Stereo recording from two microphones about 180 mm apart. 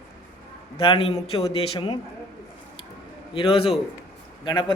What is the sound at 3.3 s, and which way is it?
A man's voice, 30° left (ahead or behind).